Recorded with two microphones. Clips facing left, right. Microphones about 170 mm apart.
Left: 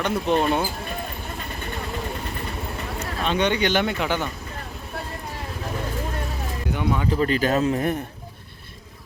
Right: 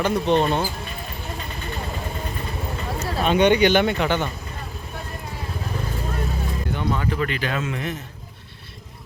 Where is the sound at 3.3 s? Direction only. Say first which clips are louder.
Right 5 dB; 10° right (ahead or behind).